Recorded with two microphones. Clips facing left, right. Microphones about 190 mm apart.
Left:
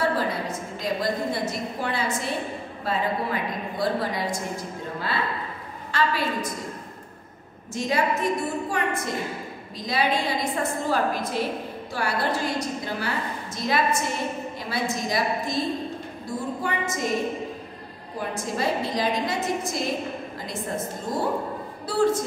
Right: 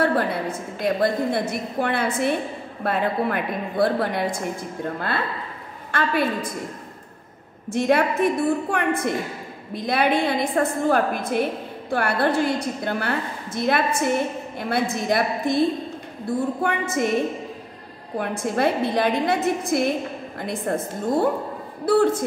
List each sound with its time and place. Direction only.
0.0 s a woman's voice: 60° right (ahead or behind)
5.9 s a woman's voice: 55° right (ahead or behind)
7.7 s a woman's voice: 60° right (ahead or behind)
18.1 s a woman's voice: 60° right (ahead or behind)